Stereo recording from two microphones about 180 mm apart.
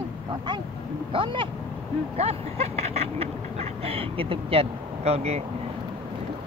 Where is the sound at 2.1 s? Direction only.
35° right (ahead or behind).